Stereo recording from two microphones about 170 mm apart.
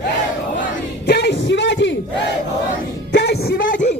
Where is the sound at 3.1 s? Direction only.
80° left; by 3.9 s 55° left (ahead or behind).